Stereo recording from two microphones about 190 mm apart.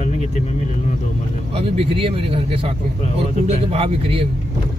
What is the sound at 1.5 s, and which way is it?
Speech, 30° right (ahead or behind).